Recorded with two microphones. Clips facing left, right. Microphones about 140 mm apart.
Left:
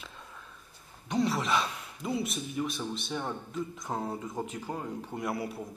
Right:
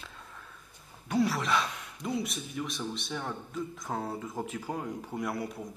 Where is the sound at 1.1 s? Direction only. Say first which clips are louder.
Right 1 dB; 25° left (ahead or behind).